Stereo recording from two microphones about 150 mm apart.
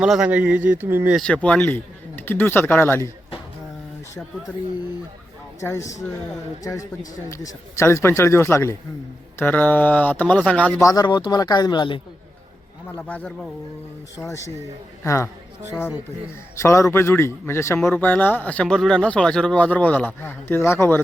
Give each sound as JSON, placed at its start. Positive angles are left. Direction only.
{"t": 0.0, "sound": "speech", "side_deg": -5}
{"t": 1.1, "sound": "speech", "side_deg": 5}
{"t": 5.5, "sound": "speech", "side_deg": 20}
{"t": 10.8, "sound": "speech", "side_deg": 25}
{"t": 13.0, "sound": "speech", "side_deg": 10}
{"t": 14.2, "sound": "speech", "side_deg": 20}
{"t": 16.6, "sound": "speech", "side_deg": 20}